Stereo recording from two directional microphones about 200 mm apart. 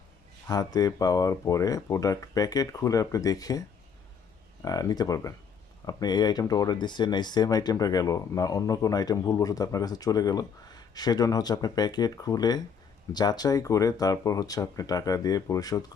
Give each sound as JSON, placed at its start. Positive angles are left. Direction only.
{"t": 0.4, "sound": "speech", "side_deg": 20}
{"t": 4.6, "sound": "speech", "side_deg": 20}